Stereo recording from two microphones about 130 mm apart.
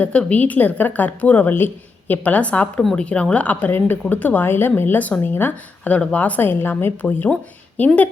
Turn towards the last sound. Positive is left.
turn(degrees=10)  # may be behind; listen again after turning